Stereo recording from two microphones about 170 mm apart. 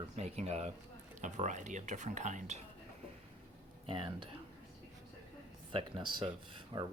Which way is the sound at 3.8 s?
30° right (ahead or behind).